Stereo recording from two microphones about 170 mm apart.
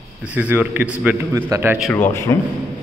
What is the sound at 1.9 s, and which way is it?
Speech, 15° left (ahead or behind).